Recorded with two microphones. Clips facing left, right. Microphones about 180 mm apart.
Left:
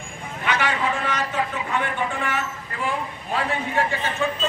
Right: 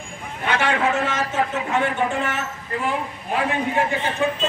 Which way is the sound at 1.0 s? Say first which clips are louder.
Right 2 dB; 25° right (ahead or behind).